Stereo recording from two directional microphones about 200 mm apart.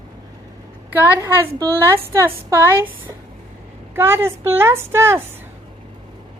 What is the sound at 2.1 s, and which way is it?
A woman's voice, 10° right (ahead or behind).